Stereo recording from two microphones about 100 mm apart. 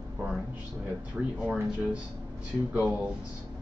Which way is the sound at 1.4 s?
5° right (ahead or behind).